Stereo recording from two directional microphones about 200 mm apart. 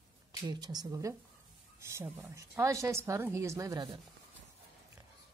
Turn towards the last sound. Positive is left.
turn(degrees=-15)  # may be behind; listen again after turning